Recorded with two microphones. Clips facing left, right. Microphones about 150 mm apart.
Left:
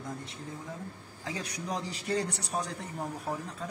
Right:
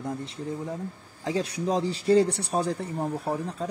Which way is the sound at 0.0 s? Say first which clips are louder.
Right 8 dB; 30° right (ahead or behind).